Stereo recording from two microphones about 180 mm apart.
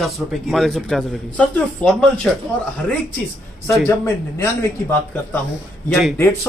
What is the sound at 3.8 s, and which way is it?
Speech, 15° left (ahead or behind).